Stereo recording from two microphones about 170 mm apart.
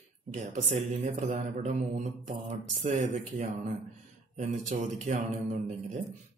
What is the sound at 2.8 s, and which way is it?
Mantra, 45° right (ahead or behind).